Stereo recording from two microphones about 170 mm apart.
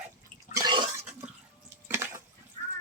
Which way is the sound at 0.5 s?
25° right (ahead or behind).